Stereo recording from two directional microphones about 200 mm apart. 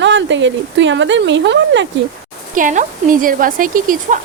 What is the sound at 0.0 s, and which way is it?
Speech, 65° right (ahead or behind).